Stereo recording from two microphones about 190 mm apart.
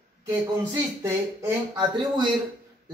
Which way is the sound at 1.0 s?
20° right (ahead or behind).